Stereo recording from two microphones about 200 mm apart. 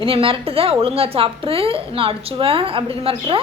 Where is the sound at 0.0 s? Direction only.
25° right (ahead or behind).